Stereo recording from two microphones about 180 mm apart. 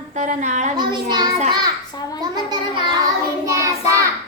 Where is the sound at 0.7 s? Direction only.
25° right (ahead or behind).